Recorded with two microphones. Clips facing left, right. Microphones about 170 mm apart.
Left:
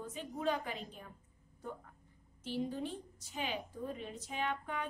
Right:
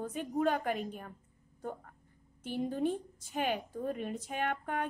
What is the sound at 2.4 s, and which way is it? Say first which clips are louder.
A woman's voice: right 5 dB; 50° right (ahead or behind).